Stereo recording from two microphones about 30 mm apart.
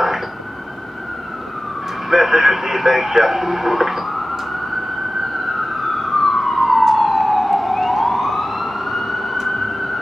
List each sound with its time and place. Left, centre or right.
2.0 s speech: centre
5.3 s emergency vehicle: centre